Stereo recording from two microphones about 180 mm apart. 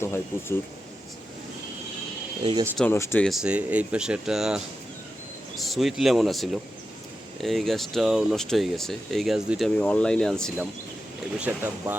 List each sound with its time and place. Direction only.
0.0 s speech: 15° left (ahead or behind)
2.4 s speech: 25° right (ahead or behind)
2.7 s speech: 10° left (ahead or behind)
3.2 s speech: 5° right (ahead or behind)
11.3 s speech: 10° right (ahead or behind)